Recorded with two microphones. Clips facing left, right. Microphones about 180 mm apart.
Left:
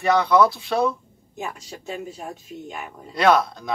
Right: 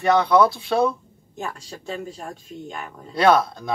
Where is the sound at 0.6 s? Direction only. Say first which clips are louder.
Right 2 dB; centre (ahead or behind).